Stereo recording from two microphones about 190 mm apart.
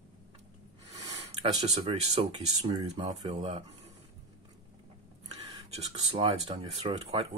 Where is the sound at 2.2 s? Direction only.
30° right (ahead or behind).